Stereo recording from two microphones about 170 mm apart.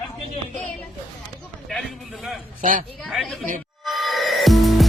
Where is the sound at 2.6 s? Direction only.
50° right (ahead or behind).